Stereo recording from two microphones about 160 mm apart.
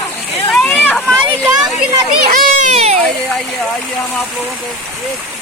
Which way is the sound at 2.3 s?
50° right (ahead or behind).